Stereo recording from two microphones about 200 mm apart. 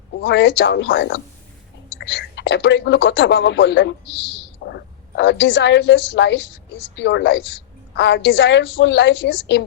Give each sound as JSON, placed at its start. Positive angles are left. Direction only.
{"t": 0.2, "sound": "a woman's voice", "side_deg": 60}